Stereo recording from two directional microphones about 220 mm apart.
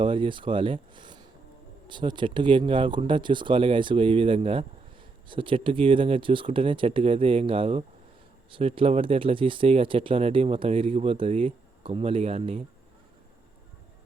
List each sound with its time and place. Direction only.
0.0 s speech: 25° right (ahead or behind)